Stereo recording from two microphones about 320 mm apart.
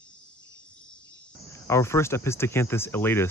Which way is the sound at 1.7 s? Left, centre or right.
Centre.